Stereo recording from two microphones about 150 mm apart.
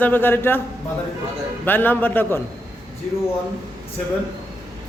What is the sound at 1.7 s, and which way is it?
Speech, 10° left (ahead or behind).